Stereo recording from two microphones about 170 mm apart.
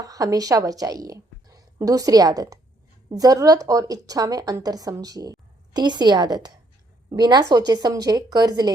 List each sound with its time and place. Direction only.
0.0 s a woman's voice: 20° right (ahead or behind)